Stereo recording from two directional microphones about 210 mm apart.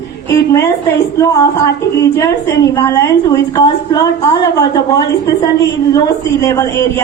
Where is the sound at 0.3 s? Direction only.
15° left (ahead or behind).